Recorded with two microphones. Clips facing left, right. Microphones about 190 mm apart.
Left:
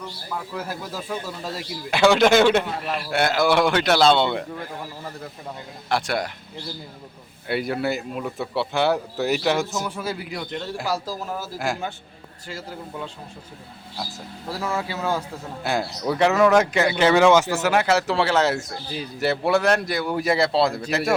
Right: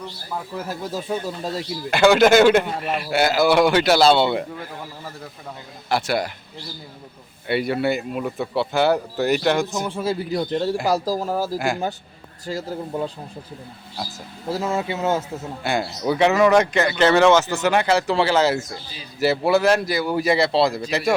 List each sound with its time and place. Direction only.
0.9 s a man's voice: 25° right (ahead or behind)
1.9 s speech: centre (ahead or behind)
5.9 s speech: 5° right (ahead or behind)
7.4 s speech: centre (ahead or behind)
9.8 s a man's voice: 30° right (ahead or behind)
11.5 s speech: centre (ahead or behind)
12.5 s a man's voice: 40° right (ahead or behind)
14.4 s a man's voice: 25° right (ahead or behind)
15.6 s speech: centre (ahead or behind)